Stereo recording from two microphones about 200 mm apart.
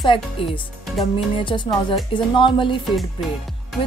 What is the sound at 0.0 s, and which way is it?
Speech, 25° left (ahead or behind).